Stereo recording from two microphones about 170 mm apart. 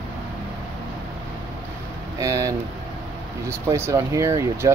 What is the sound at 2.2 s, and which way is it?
Speech, 20° right (ahead or behind).